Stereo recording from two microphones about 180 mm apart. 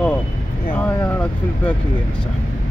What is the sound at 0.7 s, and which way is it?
Speech, 10° left (ahead or behind).